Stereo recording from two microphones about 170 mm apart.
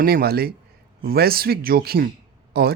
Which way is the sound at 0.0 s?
65° right (ahead or behind).